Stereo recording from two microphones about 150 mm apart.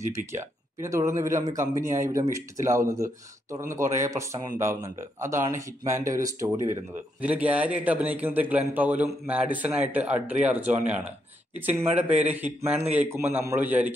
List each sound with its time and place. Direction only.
0.3 s speech: 20° right (ahead or behind)
7.2 s a man's voice: 10° right (ahead or behind)